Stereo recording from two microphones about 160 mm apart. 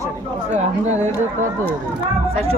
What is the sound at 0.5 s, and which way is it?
Speech, 50° right (ahead or behind).